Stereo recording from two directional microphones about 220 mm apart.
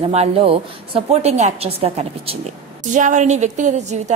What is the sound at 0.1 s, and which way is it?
A woman's voice, 25° right (ahead or behind).